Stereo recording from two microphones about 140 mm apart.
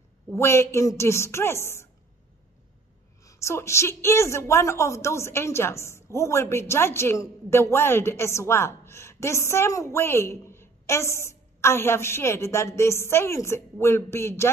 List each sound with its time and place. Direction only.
0.3 s a woman's voice: 20° left (ahead or behind)
3.3 s a woman's voice: 20° left (ahead or behind)